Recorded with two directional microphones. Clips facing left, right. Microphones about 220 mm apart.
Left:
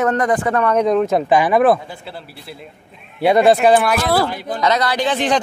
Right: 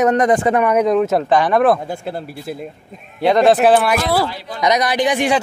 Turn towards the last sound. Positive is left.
turn(degrees=-10)  # may be behind; listen again after turning